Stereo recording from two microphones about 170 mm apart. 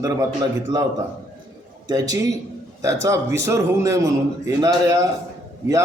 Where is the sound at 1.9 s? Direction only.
20° right (ahead or behind).